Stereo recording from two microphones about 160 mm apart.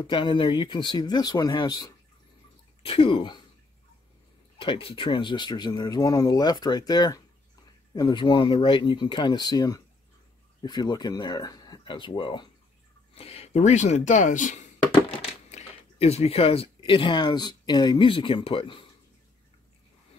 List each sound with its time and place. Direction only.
0.0 s speech: 30° left (ahead or behind)
2.8 s speech: 35° left (ahead or behind)
4.6 s speech: 35° left (ahead or behind); by 14.7 s 50° left (ahead or behind)
15.5 s speech: 40° left (ahead or behind)